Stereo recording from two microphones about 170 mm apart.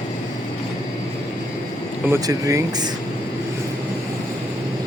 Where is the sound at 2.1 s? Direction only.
20° right (ahead or behind).